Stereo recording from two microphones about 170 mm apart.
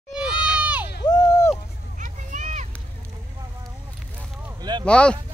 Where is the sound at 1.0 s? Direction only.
20° left (ahead or behind).